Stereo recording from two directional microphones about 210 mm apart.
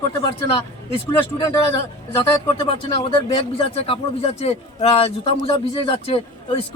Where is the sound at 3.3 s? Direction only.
25° left (ahead or behind).